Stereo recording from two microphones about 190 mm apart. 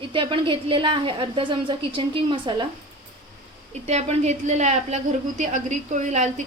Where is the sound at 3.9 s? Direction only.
35° right (ahead or behind).